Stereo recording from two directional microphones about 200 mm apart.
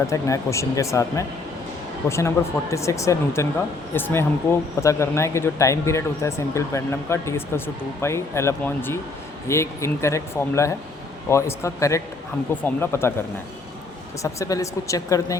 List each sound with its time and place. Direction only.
0.1 s speech: 15° left (ahead or behind)
14.2 s speech: 15° left (ahead or behind)